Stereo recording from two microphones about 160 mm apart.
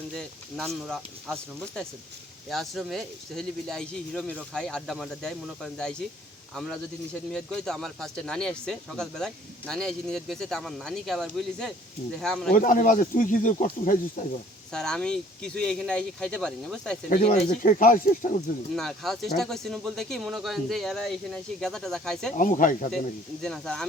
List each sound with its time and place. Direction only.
0.2 s a man's voice: centre (ahead or behind)
12.5 s speech: 55° left (ahead or behind)
14.7 s speech: 5° left (ahead or behind)
17.1 s speech: 70° left (ahead or behind)
17.5 s speech: 60° left (ahead or behind)
18.7 s speech: centre (ahead or behind)
22.4 s speech: 55° left (ahead or behind)
23.4 s speech: 5° left (ahead or behind)